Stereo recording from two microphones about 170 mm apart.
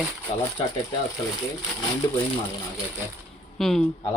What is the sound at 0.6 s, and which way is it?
Speech, 30° left (ahead or behind).